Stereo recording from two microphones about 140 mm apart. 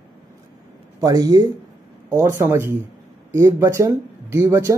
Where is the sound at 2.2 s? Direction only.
20° right (ahead or behind).